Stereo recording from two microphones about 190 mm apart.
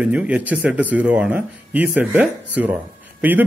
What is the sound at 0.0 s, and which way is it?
Speech, 5° right (ahead or behind).